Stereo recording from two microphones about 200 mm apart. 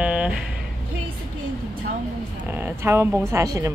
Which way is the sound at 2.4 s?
10° right (ahead or behind).